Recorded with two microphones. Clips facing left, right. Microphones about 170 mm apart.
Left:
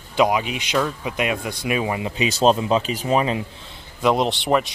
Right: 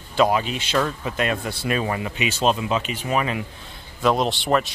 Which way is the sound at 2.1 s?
35° left (ahead or behind).